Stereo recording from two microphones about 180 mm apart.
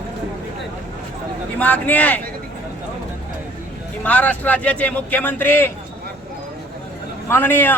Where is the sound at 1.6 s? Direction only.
10° left (ahead or behind).